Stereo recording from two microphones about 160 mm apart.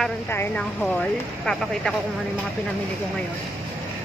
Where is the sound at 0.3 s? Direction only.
15° left (ahead or behind).